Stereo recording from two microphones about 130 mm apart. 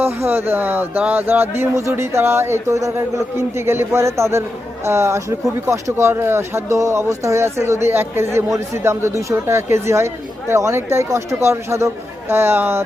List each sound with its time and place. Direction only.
0.0 s speech: 15° right (ahead or behind)